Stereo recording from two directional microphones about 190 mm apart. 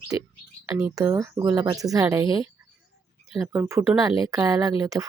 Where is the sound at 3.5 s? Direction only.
15° right (ahead or behind).